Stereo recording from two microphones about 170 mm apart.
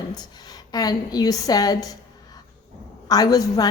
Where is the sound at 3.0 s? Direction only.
20° left (ahead or behind).